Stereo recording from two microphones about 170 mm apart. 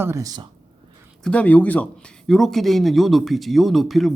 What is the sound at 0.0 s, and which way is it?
Speech, 20° right (ahead or behind).